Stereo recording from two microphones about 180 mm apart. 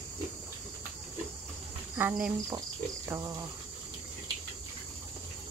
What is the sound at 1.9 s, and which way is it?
Speech, 10° right (ahead or behind).